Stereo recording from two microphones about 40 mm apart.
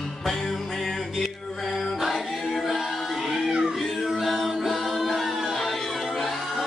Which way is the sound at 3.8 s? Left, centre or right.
Centre.